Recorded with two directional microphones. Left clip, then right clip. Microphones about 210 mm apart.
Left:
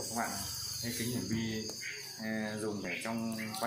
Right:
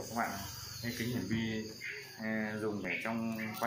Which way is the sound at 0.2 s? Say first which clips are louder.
Right 1 dB; centre (ahead or behind).